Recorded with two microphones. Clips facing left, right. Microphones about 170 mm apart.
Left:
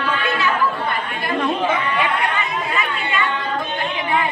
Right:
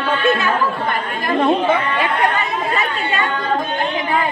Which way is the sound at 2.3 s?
40° right (ahead or behind).